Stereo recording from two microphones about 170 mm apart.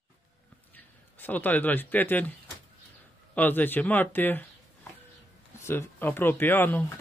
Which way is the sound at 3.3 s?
10° left (ahead or behind).